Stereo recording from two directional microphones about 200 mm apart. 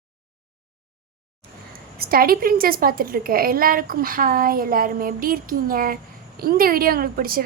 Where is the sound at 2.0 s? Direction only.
45° right (ahead or behind).